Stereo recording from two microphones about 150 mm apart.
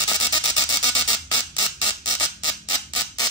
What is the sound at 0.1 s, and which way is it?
Music, 25° left (ahead or behind).